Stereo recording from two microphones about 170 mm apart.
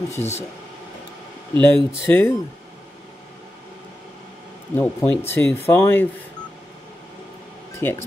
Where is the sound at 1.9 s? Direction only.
15° left (ahead or behind).